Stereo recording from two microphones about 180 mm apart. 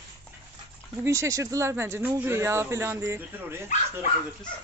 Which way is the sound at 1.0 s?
15° right (ahead or behind).